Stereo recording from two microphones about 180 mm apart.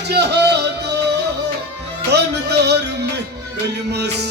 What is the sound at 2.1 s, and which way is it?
Music, 70° right (ahead or behind).